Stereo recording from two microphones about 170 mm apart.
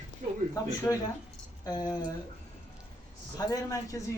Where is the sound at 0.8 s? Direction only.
10° left (ahead or behind).